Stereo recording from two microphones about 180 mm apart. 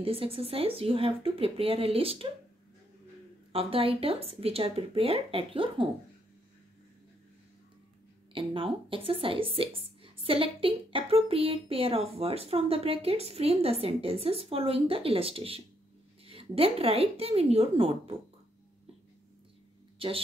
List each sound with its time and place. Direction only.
0.0 s a woman's voice: 30° right (ahead or behind)
3.5 s a woman's voice: 30° right (ahead or behind)
8.3 s a woman's voice: 30° right (ahead or behind)
20.0 s speech: 30° right (ahead or behind)